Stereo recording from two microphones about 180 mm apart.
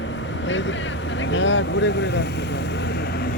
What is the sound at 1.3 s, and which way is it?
Speech, 90° left.